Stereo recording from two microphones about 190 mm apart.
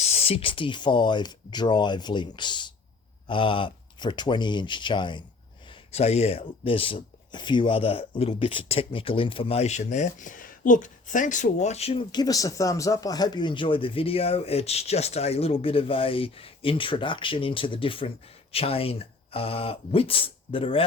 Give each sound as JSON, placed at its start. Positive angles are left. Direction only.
{"t": 0.0, "sound": "speech", "side_deg": 35}